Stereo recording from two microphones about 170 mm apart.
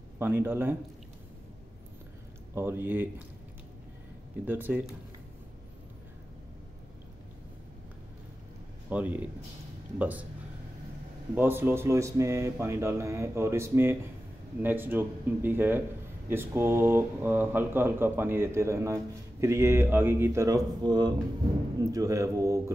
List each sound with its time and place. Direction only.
0.2 s speech: 10° right (ahead or behind)
2.5 s speech: 15° right (ahead or behind)
4.5 s speech: 10° right (ahead or behind)
8.9 s speech: 10° right (ahead or behind)
11.3 s speech: 10° right (ahead or behind)